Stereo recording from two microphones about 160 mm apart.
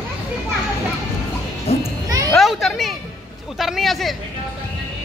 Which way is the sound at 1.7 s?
40° left (ahead or behind).